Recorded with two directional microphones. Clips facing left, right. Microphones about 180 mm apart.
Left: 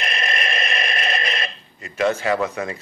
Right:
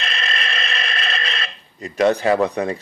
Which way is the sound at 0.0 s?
15° left (ahead or behind).